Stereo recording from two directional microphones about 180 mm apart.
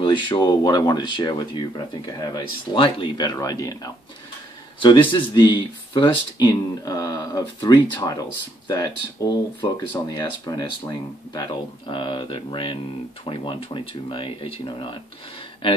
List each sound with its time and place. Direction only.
0.0 s speech: 25° left (ahead or behind)